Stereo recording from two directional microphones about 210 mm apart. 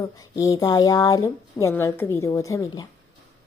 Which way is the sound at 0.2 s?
15° left (ahead or behind).